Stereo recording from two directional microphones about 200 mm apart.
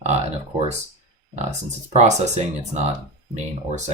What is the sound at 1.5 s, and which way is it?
Speech, 35° right (ahead or behind).